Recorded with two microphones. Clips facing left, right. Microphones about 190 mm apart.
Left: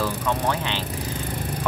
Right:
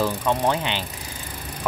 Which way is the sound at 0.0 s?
15° right (ahead or behind).